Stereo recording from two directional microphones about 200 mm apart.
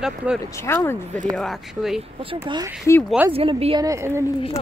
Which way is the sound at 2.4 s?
20° right (ahead or behind).